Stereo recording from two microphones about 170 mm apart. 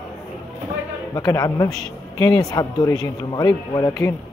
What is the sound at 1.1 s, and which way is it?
Speech, 20° left (ahead or behind).